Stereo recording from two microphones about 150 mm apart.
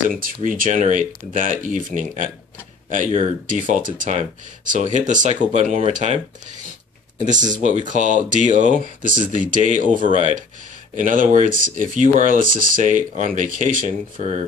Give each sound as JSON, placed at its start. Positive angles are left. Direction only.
{"t": 0.2, "sound": "speech", "side_deg": -65}
{"t": 7.2, "sound": "speech", "side_deg": -55}
{"t": 11.0, "sound": "speech", "side_deg": -60}